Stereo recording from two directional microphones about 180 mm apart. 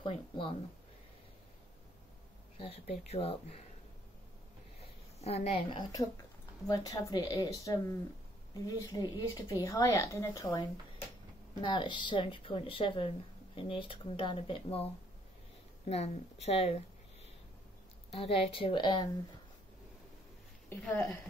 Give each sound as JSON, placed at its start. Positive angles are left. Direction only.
{"t": 0.0, "sound": "speech", "side_deg": 30}
{"t": 2.5, "sound": "a woman's voice", "side_deg": 30}
{"t": 5.2, "sound": "a woman's voice", "side_deg": 35}
{"t": 18.1, "sound": "a woman's voice", "side_deg": 35}
{"t": 20.7, "sound": "speech", "side_deg": 10}